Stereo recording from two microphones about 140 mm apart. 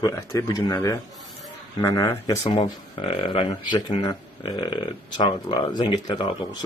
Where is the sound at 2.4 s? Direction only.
45° left (ahead or behind).